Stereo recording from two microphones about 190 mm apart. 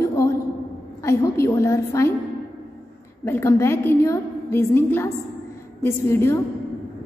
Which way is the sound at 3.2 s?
15° left (ahead or behind).